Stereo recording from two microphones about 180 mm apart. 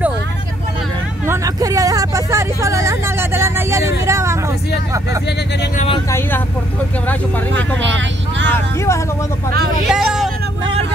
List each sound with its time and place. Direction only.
1.2 s vehicle: 15° right (ahead or behind)
6.0 s speech: 15° left (ahead or behind)
7.5 s speech: 90° right
8.5 s speech: 15° left (ahead or behind)
9.8 s vehicle: centre (ahead or behind)